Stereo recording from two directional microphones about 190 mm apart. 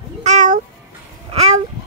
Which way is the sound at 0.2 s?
40° right (ahead or behind).